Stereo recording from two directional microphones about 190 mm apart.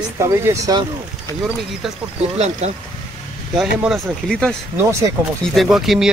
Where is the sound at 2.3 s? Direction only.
35° right (ahead or behind).